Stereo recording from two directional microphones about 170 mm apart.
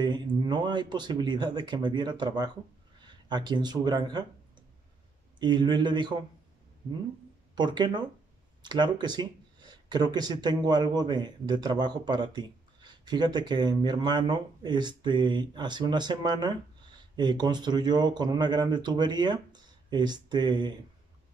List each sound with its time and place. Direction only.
0.0 s speech: 25° right (ahead or behind)
5.4 s speech: 25° right (ahead or behind)
7.5 s speech: 25° right (ahead or behind)